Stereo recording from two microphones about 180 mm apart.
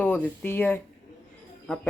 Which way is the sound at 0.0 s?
10° left (ahead or behind).